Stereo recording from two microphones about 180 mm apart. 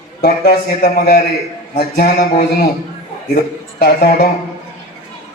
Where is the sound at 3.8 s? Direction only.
65° left (ahead or behind).